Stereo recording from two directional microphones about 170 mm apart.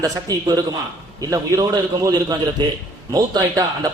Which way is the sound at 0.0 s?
20° right (ahead or behind).